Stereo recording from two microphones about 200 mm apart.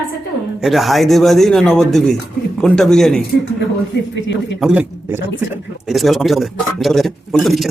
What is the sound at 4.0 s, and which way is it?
Speech, 65° left (ahead or behind).